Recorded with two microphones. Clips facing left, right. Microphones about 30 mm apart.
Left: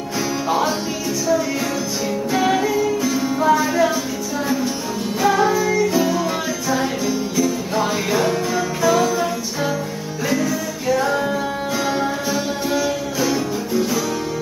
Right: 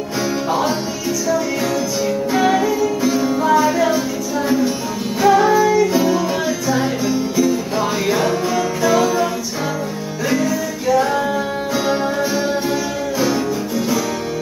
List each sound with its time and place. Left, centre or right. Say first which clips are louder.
0.5 s music: even; centre
2.3 s music: right 1 dB; centre
5.2 s music: right 5 dB; centre
10.9 s music: right 3 dB; centre